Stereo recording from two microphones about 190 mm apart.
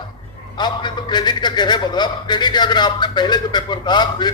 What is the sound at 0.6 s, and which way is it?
A man's voice, 25° left (ahead or behind).